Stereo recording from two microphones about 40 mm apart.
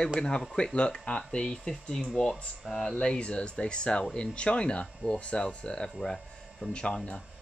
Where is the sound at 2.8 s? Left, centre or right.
Centre.